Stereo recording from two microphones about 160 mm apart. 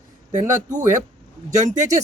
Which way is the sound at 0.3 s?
50° right (ahead or behind).